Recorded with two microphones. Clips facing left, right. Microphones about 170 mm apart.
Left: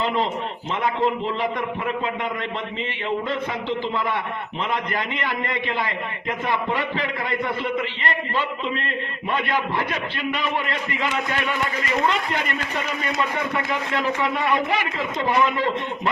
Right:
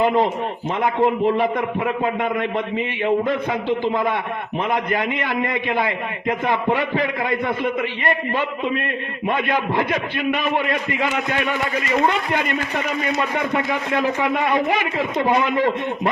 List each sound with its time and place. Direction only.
1.0 s a man's voice: 15° right (ahead or behind)
3.7 s a man's voice: 15° right (ahead or behind)
10.9 s a man's voice: 20° right (ahead or behind)